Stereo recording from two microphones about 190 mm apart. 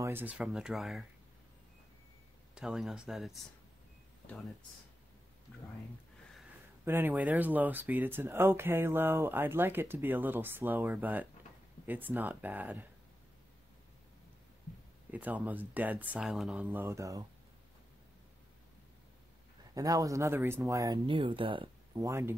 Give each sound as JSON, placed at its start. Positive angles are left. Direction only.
{"t": 0.0, "sound": "speech", "side_deg": -10}
{"t": 2.5, "sound": "speech", "side_deg": 0}
{"t": 6.8, "sound": "speech", "side_deg": -10}
{"t": 15.0, "sound": "speech", "side_deg": -10}
{"t": 19.7, "sound": "speech", "side_deg": -20}
{"t": 21.9, "sound": "speech", "side_deg": -15}